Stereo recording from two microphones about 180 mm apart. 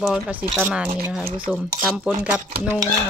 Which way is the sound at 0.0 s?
Centre (ahead or behind).